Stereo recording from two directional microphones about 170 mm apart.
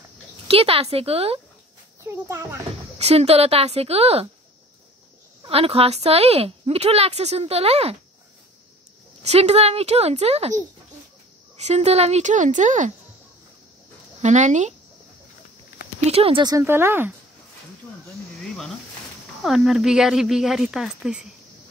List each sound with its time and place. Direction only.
0.5 s speech: 35° right (ahead or behind)
2.0 s speech: 15° right (ahead or behind)
3.0 s speech: 35° right (ahead or behind)
5.5 s speech: 35° right (ahead or behind)
9.2 s speech: 40° right (ahead or behind)
11.5 s speech: 40° right (ahead or behind)
14.2 s speech: 45° right (ahead or behind)
16.1 s speech: 35° right (ahead or behind)
16.4 s speech: 15° right (ahead or behind)
19.4 s speech: centre (ahead or behind)